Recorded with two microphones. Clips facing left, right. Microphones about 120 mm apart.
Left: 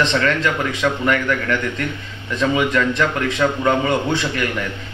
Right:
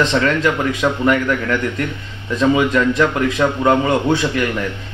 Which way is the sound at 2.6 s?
15° right (ahead or behind).